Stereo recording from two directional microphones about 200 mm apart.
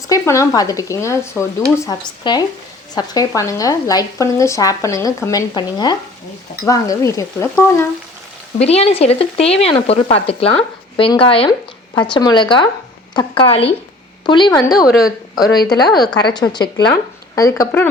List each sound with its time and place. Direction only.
0.1 s speech: 15° left (ahead or behind)
8.5 s speech: 30° left (ahead or behind)
14.5 s speech: centre (ahead or behind)
15.4 s speech: 20° left (ahead or behind)